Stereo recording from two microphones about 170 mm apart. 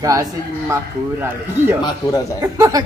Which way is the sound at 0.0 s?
20° right (ahead or behind).